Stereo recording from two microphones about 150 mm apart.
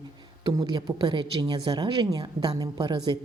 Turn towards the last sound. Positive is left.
turn(degrees=-30)  # may be behind; listen again after turning